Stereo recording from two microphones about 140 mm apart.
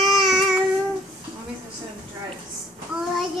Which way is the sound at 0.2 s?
Centre (ahead or behind).